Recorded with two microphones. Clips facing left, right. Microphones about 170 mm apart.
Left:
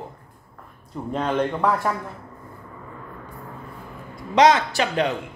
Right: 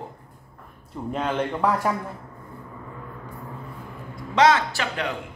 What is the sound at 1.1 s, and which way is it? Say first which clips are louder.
Speech: left 2 dB; 5° right (ahead or behind).